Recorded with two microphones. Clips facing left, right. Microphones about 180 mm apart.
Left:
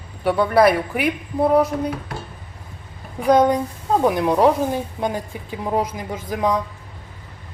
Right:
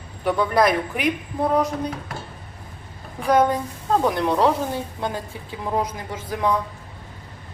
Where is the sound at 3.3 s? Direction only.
15° left (ahead or behind).